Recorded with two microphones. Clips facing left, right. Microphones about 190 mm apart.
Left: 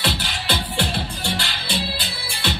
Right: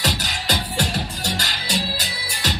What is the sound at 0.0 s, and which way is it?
Music, 45° right (ahead or behind).